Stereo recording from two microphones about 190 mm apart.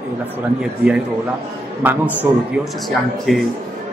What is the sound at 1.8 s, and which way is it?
A man's voice, 10° right (ahead or behind).